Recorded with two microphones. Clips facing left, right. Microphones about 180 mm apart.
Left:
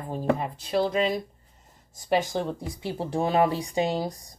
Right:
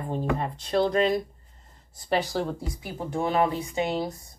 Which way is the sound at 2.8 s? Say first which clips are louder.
Left 2 dB; 30° left (ahead or behind).